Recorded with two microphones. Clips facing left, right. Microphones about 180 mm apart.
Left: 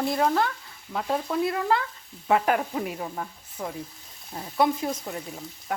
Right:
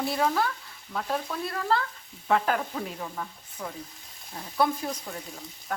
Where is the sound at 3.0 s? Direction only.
30° left (ahead or behind).